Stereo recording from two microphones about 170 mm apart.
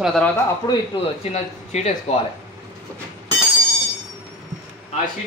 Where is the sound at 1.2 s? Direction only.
40° left (ahead or behind).